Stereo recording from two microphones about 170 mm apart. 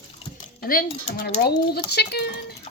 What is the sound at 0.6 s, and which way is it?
Speech, 60° left (ahead or behind).